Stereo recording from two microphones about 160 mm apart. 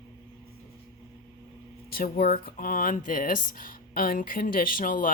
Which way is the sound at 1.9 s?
65° left (ahead or behind).